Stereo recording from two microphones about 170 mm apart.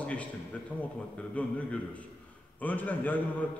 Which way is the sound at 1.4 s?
10° left (ahead or behind).